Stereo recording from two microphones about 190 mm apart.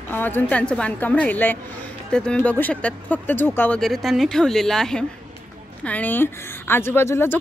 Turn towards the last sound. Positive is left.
turn(degrees=10)  # may be behind; listen again after turning